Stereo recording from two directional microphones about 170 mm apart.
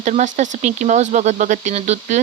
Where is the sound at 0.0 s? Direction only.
45° right (ahead or behind).